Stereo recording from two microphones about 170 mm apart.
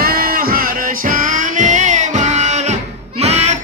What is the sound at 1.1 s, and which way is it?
Music, 50° right (ahead or behind).